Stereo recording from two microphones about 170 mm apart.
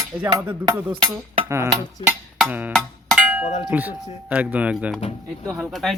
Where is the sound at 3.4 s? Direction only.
40° left (ahead or behind).